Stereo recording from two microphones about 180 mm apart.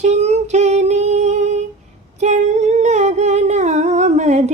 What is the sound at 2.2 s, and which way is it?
Humming, 40° right (ahead or behind).